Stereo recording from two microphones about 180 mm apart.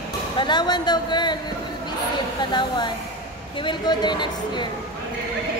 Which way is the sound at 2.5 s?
25° left (ahead or behind).